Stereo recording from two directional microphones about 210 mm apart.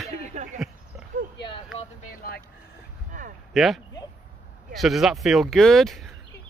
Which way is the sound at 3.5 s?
Centre (ahead or behind).